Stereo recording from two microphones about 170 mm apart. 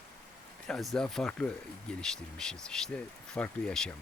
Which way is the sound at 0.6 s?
Centre (ahead or behind).